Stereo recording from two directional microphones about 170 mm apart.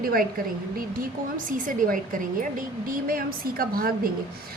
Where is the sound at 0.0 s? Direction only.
60° right (ahead or behind).